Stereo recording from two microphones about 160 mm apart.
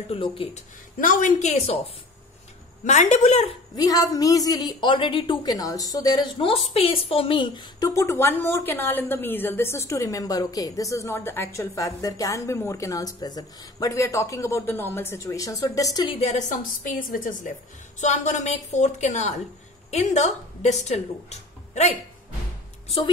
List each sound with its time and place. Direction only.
0.1 s speech: 35° left (ahead or behind)
0.9 s a woman's voice: 60° left (ahead or behind); by 1.8 s 40° left (ahead or behind)
2.8 s a woman's voice: 45° left (ahead or behind)
3.7 s a woman's voice: 25° left (ahead or behind)
6.4 s a woman's voice: 35° left (ahead or behind)
16.2 s a woman's voice: 45° left (ahead or behind)
17.9 s a woman's voice: 45° left (ahead or behind)